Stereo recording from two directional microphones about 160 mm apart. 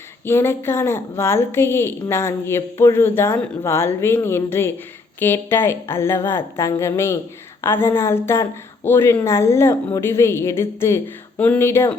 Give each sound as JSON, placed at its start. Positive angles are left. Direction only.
{"t": 0.3, "sound": "a woman's voice", "side_deg": 15}